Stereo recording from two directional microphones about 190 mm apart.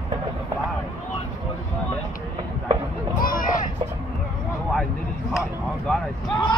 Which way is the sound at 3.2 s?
50° left (ahead or behind).